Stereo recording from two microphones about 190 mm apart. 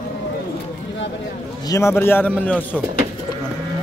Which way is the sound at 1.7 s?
15° left (ahead or behind).